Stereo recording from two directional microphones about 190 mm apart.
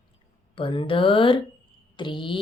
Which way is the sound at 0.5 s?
30° left (ahead or behind).